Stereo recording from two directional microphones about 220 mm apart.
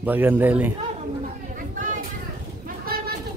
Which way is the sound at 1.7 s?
35° right (ahead or behind).